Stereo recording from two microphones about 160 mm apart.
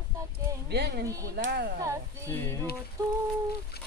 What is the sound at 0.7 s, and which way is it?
Speech, 85° right.